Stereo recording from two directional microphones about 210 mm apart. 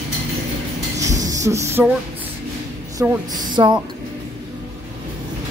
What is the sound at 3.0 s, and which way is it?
Speech, 20° right (ahead or behind).